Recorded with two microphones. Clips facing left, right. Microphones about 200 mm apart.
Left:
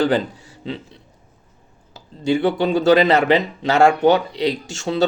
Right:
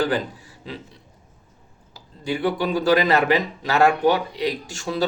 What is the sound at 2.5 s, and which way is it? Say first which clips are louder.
Speech: left 3 dB; 25° left (ahead or behind).